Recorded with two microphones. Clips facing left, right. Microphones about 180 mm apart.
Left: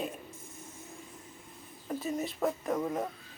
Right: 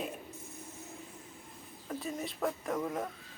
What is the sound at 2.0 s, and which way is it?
Speech, centre (ahead or behind).